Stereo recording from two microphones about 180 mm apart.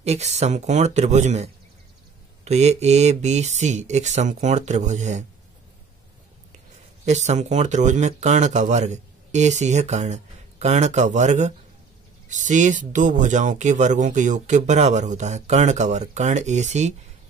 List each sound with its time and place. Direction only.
0.0 s speech: 35° right (ahead or behind)
7.1 s speech: 40° right (ahead or behind)